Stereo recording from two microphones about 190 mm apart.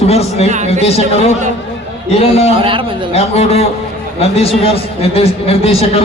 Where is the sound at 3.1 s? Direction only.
30° left (ahead or behind).